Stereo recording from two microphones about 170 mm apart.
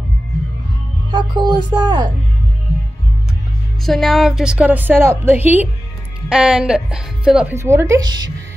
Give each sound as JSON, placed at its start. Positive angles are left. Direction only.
{"t": 1.1, "sound": "speech", "side_deg": -25}
{"t": 3.8, "sound": "a woman's voice", "side_deg": 0}
{"t": 7.5, "sound": "speech", "side_deg": -15}